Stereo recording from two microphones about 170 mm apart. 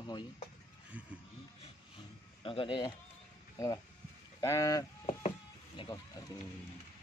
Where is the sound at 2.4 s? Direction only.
30° left (ahead or behind).